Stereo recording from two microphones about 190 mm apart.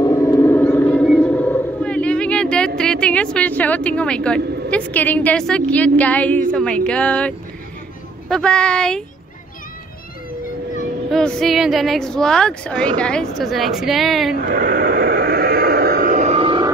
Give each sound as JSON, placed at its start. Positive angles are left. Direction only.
{"t": 0.0, "sound": "vehicle", "side_deg": 15}
{"t": 6.5, "sound": "speech", "side_deg": 5}
{"t": 11.1, "sound": "speech", "side_deg": 0}
{"t": 14.3, "sound": "sheep", "side_deg": -50}